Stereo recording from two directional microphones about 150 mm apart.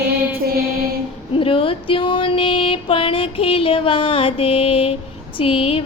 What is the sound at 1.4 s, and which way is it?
Music, 35° left (ahead or behind).